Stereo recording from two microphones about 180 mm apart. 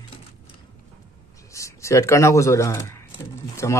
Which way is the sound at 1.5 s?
15° left (ahead or behind).